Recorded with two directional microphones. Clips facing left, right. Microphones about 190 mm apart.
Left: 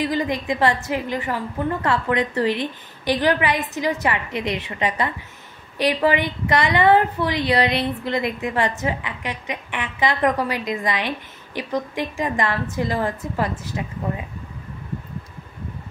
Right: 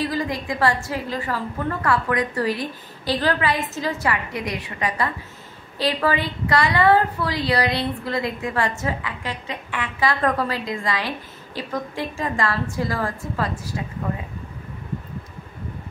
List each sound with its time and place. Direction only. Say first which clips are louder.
0.0 s a woman's voice: left 2 dB; 20° left (ahead or behind)